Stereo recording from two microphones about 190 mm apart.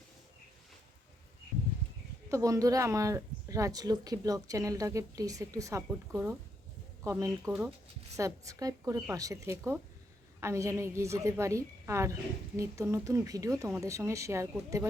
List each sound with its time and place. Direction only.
2.3 s speech: 15° right (ahead or behind)
7.4 s speech: 5° right (ahead or behind)
8.1 s speech: 15° right (ahead or behind)